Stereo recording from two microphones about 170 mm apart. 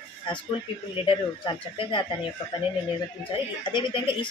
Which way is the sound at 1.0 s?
30° left (ahead or behind).